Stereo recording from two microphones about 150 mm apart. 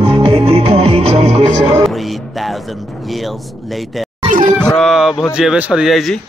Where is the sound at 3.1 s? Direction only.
Centre (ahead or behind).